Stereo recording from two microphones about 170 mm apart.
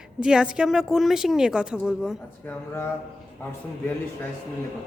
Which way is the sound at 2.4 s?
15° left (ahead or behind).